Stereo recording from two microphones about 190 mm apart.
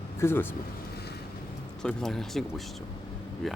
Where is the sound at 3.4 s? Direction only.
Centre (ahead or behind).